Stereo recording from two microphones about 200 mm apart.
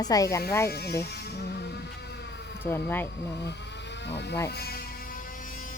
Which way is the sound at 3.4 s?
60° left (ahead or behind).